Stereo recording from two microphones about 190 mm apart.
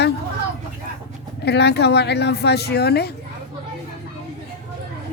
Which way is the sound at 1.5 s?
60° left (ahead or behind).